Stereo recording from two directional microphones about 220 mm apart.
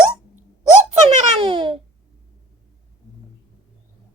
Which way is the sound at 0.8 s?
30° right (ahead or behind).